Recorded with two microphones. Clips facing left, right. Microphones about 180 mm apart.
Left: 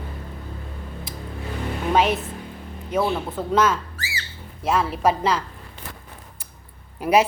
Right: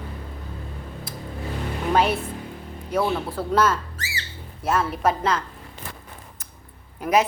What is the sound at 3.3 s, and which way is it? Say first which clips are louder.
Speech: left 1 dB; 5° right (ahead or behind).